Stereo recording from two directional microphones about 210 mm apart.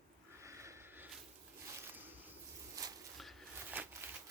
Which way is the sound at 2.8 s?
15° right (ahead or behind).